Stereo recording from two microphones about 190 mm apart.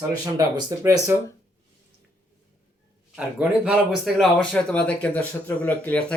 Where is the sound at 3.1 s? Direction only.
5° right (ahead or behind); by 6.2 s 10° left (ahead or behind).